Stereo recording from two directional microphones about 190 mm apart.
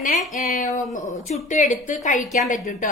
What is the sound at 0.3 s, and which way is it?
A woman's voice, 50° left (ahead or behind).